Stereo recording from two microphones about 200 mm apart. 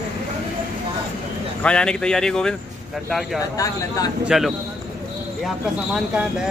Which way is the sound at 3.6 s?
15° left (ahead or behind).